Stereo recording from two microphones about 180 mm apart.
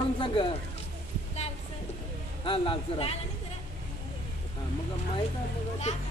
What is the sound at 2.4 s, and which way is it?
Speech, 30° left (ahead or behind).